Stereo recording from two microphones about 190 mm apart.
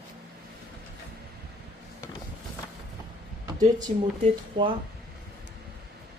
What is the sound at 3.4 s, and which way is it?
Speech, 20° right (ahead or behind).